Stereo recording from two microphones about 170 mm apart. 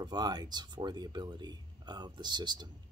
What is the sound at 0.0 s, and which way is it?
Speech, 25° right (ahead or behind).